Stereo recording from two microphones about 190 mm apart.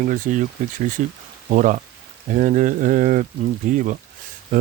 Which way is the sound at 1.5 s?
45° right (ahead or behind).